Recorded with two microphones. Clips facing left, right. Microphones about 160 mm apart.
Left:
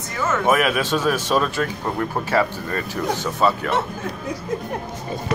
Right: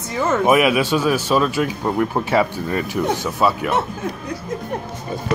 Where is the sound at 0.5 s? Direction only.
10° right (ahead or behind).